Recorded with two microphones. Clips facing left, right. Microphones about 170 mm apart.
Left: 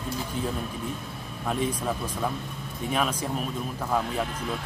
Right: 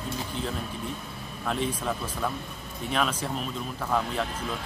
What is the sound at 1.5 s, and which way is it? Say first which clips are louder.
Speech: left 1 dB; 5° left (ahead or behind).